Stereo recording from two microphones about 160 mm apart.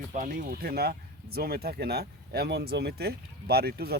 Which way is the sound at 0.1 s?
60° right (ahead or behind).